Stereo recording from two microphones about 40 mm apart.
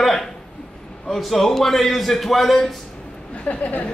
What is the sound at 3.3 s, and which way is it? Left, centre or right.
Speech, left.